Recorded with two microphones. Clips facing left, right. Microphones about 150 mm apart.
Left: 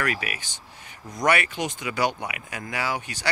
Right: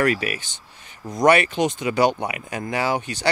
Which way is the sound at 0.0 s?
30° right (ahead or behind).